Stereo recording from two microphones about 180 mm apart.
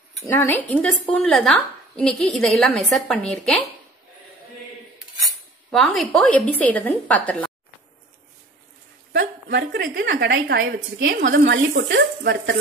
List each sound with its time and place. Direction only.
0.2 s a woman's voice: 10° left (ahead or behind)
4.9 s speech: centre (ahead or behind)
9.1 s a woman's voice: 75° right (ahead or behind)
11.1 s speech: 55° right (ahead or behind)
11.9 s a woman's voice: 70° right (ahead or behind)